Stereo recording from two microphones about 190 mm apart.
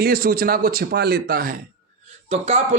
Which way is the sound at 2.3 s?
35° right (ahead or behind).